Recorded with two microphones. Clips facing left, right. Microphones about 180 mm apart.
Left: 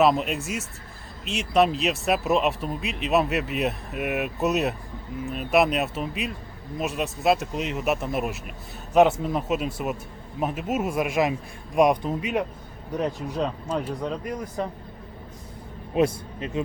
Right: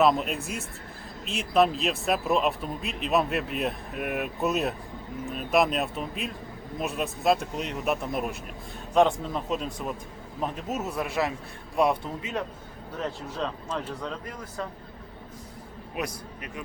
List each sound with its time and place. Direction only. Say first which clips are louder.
0.0 s a man's voice: left 2 dB; centre (ahead or behind); by 14.7 s 20° left (ahead or behind)
16.0 s speech: left 11 dB; 25° left (ahead or behind)